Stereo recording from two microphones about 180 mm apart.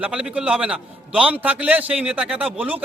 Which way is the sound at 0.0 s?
5° right (ahead or behind).